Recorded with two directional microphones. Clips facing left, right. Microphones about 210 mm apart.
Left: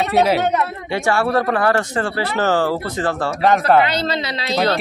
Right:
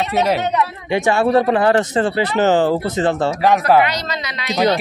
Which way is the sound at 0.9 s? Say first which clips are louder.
Right 3 dB; 20° right (ahead or behind).